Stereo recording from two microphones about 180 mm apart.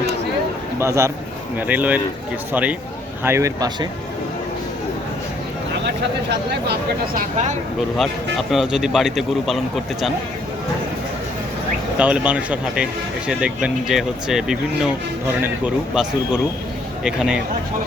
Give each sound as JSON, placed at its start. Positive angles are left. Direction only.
{"t": 0.8, "sound": "a man's voice", "side_deg": -15}
{"t": 6.5, "sound": "speech", "side_deg": -60}
{"t": 8.4, "sound": "speech", "side_deg": 0}
{"t": 11.9, "sound": "speech", "side_deg": -5}